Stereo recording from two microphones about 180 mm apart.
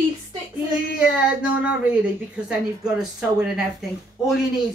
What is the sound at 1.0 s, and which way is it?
Speech, 5° right (ahead or behind).